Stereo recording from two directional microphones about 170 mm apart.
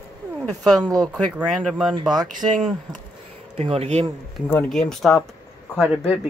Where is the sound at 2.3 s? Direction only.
50° right (ahead or behind).